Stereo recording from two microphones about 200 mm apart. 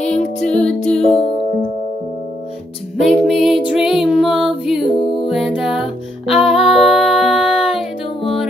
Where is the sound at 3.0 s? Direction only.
Centre (ahead or behind).